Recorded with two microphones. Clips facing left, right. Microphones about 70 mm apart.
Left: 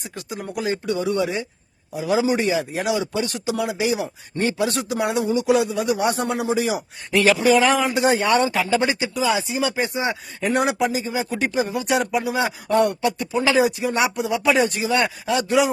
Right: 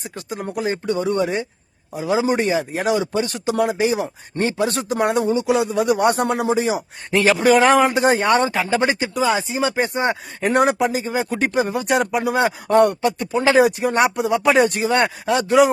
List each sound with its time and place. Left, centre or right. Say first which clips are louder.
0.3 s speech: right 2 dB; right
5.3 s a man's voice: even; right
5.7 s speech: right 4 dB; right
6.5 s speech: right 2 dB; right
7.3 s speech: right 3 dB; right